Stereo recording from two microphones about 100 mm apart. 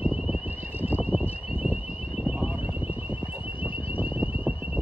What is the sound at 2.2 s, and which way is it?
Wind, 10° right (ahead or behind).